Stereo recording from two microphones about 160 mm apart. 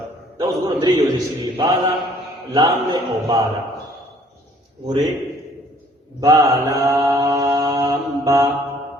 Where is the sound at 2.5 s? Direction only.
25° right (ahead or behind).